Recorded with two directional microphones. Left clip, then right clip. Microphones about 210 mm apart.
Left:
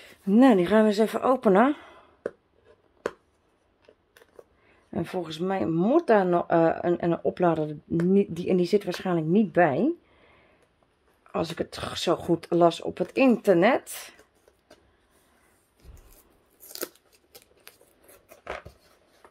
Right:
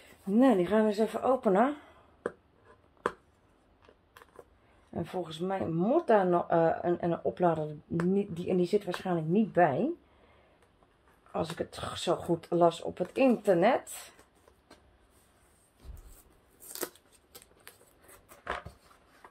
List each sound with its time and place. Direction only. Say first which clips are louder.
0.0 s speech: left 6 dB; 60° left (ahead or behind)
4.9 s speech: left 5 dB; 60° left (ahead or behind)
11.3 s speech: left 5 dB; 60° left (ahead or behind)
16.7 s scissors: left 3 dB; 10° left (ahead or behind)